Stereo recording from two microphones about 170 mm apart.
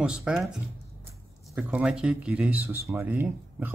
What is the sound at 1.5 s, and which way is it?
Speech, 5° right (ahead or behind).